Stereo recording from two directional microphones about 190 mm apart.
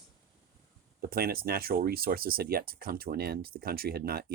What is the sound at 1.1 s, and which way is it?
Speech, 50° right (ahead or behind).